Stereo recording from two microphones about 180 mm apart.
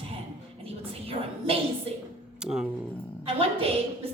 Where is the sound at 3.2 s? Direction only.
30° right (ahead or behind).